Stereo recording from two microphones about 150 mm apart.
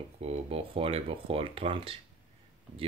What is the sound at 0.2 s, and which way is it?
Speech, 40° right (ahead or behind).